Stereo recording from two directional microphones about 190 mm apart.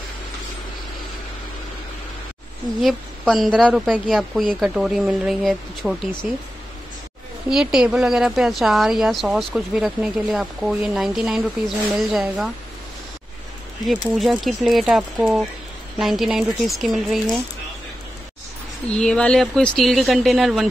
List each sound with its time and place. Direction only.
2.8 s a woman's voice: centre (ahead or behind)
7.4 s speech: 5° right (ahead or behind)
14.1 s speech: centre (ahead or behind)
18.9 s speech: 5° left (ahead or behind)